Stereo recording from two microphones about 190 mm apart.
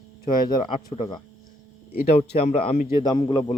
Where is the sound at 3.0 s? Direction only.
25° left (ahead or behind).